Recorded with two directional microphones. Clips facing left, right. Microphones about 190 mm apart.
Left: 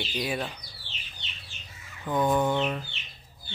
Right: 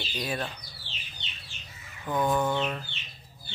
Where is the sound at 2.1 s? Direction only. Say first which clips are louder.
Left 2 dB; 20° left (ahead or behind).